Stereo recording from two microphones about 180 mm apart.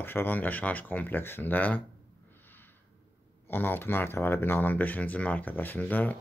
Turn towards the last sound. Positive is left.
turn(degrees=10)  # may be behind; listen again after turning